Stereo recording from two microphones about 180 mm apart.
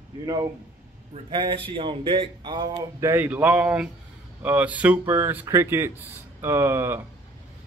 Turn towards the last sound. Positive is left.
turn(degrees=-15)  # may be behind; listen again after turning